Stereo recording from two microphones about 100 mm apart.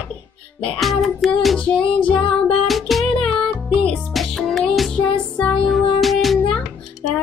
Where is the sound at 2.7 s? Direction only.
Centre (ahead or behind).